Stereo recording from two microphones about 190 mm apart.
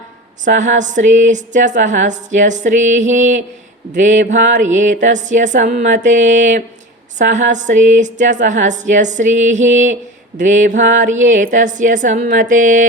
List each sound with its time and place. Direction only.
0.4 s speech: 40° right (ahead or behind)